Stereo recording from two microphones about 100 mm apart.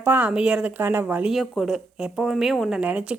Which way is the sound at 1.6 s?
5° right (ahead or behind).